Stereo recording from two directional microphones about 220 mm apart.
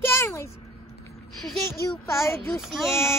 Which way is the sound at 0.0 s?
10° left (ahead or behind).